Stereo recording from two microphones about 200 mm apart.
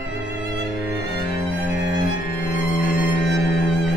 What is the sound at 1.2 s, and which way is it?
Music, 50° left (ahead or behind).